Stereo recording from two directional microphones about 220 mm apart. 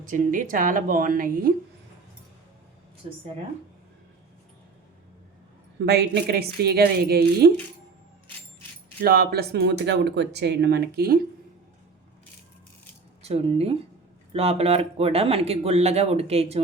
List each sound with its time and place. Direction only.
0.1 s a woman's voice: 35° right (ahead or behind)
3.0 s speech: 25° right (ahead or behind)
5.8 s speech: 50° right (ahead or behind)
9.0 s speech: 45° right (ahead or behind)
13.2 s speech: 25° right (ahead or behind)